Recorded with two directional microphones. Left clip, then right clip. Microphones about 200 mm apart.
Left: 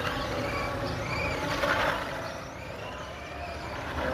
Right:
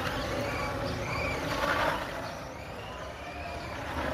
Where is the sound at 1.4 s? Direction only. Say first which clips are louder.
Left 2 dB; 30° left (ahead or behind).